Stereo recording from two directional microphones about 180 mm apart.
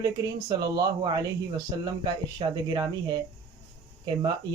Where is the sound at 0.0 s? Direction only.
20° right (ahead or behind).